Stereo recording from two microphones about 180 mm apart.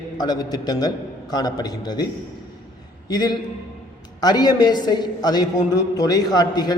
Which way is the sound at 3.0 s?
25° left (ahead or behind).